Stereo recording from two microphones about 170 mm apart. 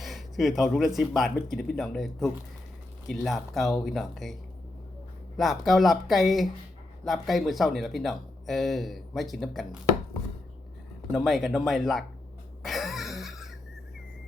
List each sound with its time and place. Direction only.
0.0 s speech: centre (ahead or behind)
5.4 s speech: centre (ahead or behind)
11.1 s speech: centre (ahead or behind)
12.6 s music: centre (ahead or behind)